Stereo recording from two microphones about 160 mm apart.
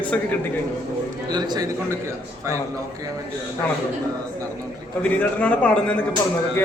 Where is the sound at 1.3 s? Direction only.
25° right (ahead or behind).